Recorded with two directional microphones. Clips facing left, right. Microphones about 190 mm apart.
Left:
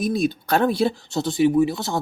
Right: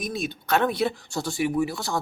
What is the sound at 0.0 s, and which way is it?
Speech, 35° left (ahead or behind).